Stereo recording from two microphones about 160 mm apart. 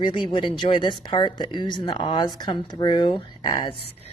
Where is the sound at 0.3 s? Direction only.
35° left (ahead or behind).